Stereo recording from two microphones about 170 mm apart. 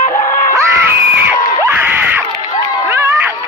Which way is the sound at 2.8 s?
15° right (ahead or behind).